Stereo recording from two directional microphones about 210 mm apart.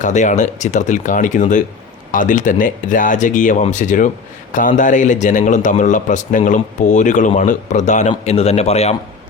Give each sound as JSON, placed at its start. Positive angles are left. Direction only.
{"t": 0.0, "sound": "a man's voice", "side_deg": 35}